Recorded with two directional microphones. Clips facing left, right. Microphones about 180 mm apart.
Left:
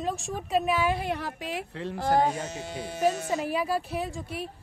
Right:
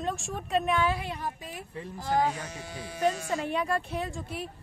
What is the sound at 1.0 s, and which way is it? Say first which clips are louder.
Speech: left 4 dB; 70° left (ahead or behind).